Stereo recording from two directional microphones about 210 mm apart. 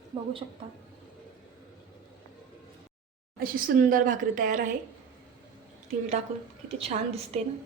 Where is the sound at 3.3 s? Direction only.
45° right (ahead or behind).